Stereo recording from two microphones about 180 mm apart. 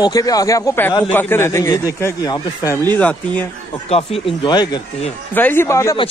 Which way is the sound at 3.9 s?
30° left (ahead or behind).